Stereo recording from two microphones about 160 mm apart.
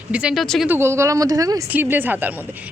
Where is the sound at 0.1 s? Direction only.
5° right (ahead or behind).